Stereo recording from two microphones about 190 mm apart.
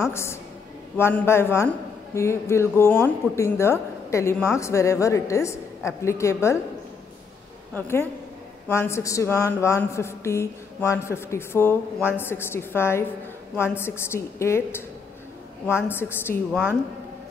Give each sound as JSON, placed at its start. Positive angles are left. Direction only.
{"t": 0.1, "sound": "speech", "side_deg": 15}
{"t": 7.7, "sound": "speech", "side_deg": 10}